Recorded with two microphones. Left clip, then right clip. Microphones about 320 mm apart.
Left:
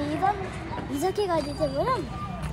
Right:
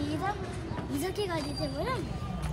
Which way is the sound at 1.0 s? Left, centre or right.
Centre.